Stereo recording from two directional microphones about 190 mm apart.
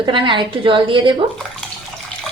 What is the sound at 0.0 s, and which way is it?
A woman's voice, 25° right (ahead or behind).